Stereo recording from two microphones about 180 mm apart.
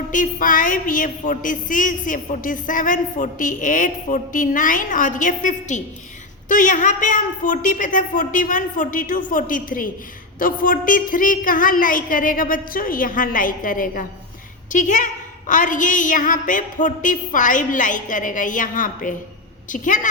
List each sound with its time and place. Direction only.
0.1 s a woman's voice: 50° left (ahead or behind)